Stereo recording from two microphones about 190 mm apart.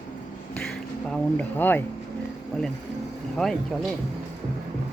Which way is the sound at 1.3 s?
10° left (ahead or behind).